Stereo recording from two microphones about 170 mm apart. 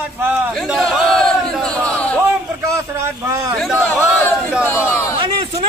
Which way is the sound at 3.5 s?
Centre (ahead or behind).